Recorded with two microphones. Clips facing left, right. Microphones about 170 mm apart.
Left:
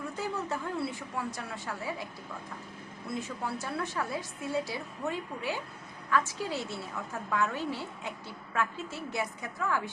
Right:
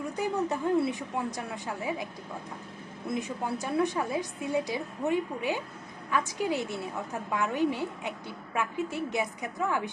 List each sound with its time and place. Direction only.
0.2 s a woman's voice: 15° right (ahead or behind)
3.1 s a woman's voice: 20° right (ahead or behind)